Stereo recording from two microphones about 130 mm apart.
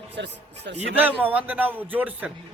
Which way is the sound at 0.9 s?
15° right (ahead or behind).